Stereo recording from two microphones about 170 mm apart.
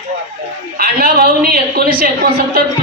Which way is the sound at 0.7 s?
60° right (ahead or behind).